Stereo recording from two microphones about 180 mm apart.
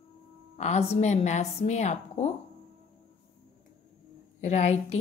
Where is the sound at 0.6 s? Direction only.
40° left (ahead or behind).